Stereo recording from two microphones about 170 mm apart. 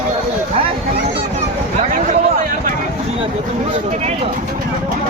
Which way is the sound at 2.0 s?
50° right (ahead or behind).